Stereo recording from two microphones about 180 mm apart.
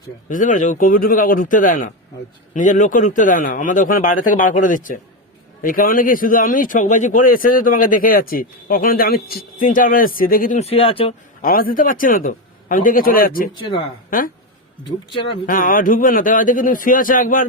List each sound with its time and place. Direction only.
0.3 s speech: 45° left (ahead or behind)
10.6 s speech: 30° left (ahead or behind)
11.4 s speech: 55° left (ahead or behind)
14.8 s speech: 25° left (ahead or behind)
15.4 s speech: 50° left (ahead or behind)